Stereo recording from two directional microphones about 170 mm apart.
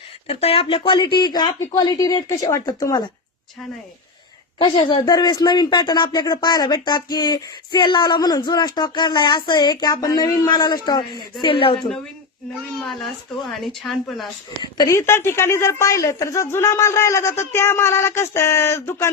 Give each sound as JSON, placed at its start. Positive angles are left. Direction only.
{"t": 0.3, "sound": "speech", "side_deg": 35}
{"t": 4.5, "sound": "speech", "side_deg": 25}
{"t": 12.8, "sound": "speech", "side_deg": 0}
{"t": 14.6, "sound": "a woman's voice", "side_deg": 20}